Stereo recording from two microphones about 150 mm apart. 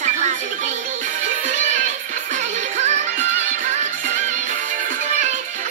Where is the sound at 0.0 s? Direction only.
55° right (ahead or behind).